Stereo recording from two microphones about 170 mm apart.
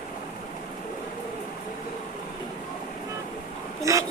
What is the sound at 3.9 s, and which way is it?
Speech, 20° right (ahead or behind).